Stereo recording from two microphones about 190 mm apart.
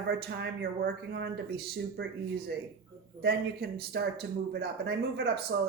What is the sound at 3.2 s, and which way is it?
Speech, 55° right (ahead or behind).